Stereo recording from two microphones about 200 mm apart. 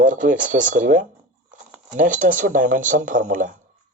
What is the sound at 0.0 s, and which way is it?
Speech, 40° right (ahead or behind).